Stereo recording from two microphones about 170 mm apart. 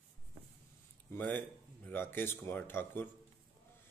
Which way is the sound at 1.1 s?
10° left (ahead or behind).